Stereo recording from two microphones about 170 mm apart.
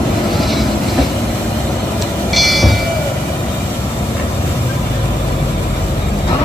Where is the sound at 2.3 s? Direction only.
Centre (ahead or behind).